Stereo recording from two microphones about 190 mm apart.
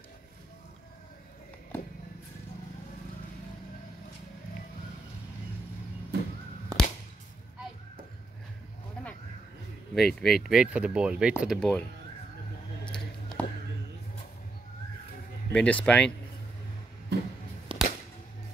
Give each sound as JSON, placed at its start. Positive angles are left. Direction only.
{"t": 6.7, "sound": "whip", "side_deg": -20}
{"t": 9.9, "sound": "speech", "side_deg": 0}
{"t": 12.8, "sound": "a sound", "side_deg": 5}
{"t": 15.5, "sound": "speech", "side_deg": 5}
{"t": 17.1, "sound": "a sound", "side_deg": -60}
{"t": 17.7, "sound": "whip", "side_deg": -30}